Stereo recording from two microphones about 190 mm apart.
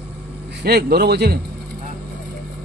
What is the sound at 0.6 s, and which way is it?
Speech, 55° right (ahead or behind).